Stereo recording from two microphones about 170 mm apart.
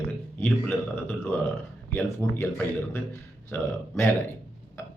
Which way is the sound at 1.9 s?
10° left (ahead or behind).